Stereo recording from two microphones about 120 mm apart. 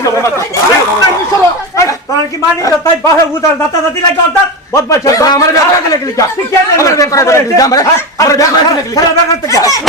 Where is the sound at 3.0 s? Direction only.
25° left (ahead or behind).